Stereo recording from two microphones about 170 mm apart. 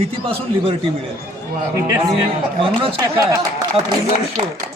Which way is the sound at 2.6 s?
30° right (ahead or behind).